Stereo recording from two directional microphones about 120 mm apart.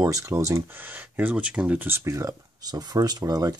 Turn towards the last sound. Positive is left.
turn(degrees=-30)  # may be behind; listen again after turning